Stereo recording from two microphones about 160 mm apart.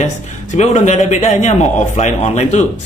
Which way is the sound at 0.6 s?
45° left (ahead or behind).